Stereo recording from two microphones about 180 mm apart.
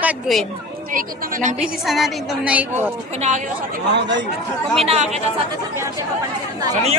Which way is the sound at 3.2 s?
40° right (ahead or behind).